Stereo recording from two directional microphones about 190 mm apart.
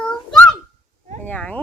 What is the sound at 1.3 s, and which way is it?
Speech, 5° left (ahead or behind).